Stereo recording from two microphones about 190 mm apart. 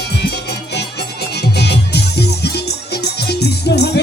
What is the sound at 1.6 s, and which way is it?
Music, 60° left (ahead or behind).